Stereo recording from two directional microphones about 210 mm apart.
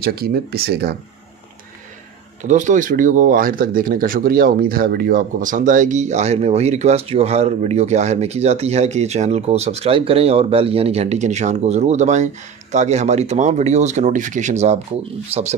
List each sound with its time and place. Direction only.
0.0 s speech: 45° right (ahead or behind)
2.4 s speech: 35° right (ahead or behind)